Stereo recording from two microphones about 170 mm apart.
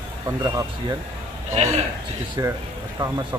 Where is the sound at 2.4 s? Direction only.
20° right (ahead or behind).